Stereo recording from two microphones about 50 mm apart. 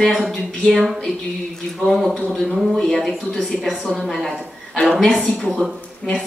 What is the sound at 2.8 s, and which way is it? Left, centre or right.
Speech, centre.